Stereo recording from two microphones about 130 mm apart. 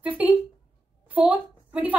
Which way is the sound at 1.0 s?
10° right (ahead or behind).